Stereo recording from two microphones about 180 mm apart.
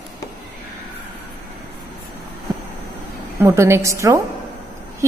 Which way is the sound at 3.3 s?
15° right (ahead or behind).